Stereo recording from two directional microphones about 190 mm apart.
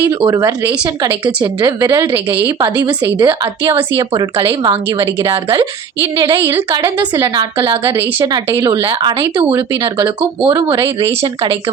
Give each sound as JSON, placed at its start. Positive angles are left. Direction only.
{"t": 0.0, "sound": "a woman's voice", "side_deg": -20}